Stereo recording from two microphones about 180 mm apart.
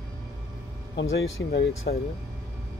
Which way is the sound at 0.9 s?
70° left (ahead or behind).